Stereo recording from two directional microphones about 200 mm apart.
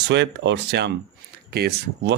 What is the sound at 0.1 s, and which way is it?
Speech, 60° right (ahead or behind).